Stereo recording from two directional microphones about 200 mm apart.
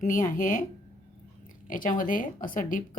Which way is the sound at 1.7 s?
45° left (ahead or behind).